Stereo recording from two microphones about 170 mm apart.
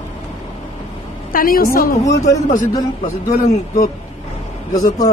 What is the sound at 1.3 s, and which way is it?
Speech, 55° left (ahead or behind).